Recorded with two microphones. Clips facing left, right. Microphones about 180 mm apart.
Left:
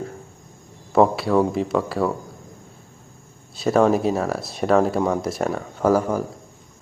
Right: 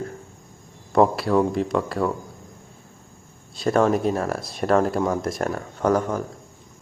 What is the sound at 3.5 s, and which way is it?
Speech, centre (ahead or behind).